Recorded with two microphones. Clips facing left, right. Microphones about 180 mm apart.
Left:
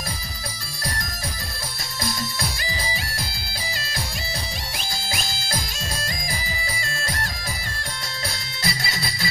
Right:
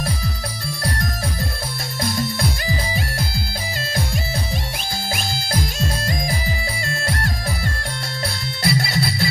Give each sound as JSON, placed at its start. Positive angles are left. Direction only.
{"t": 5.1, "sound": "music", "side_deg": -55}
{"t": 8.6, "sound": "music", "side_deg": -60}